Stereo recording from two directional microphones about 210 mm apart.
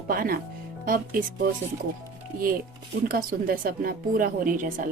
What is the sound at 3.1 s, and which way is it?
A woman's voice, 45° right (ahead or behind).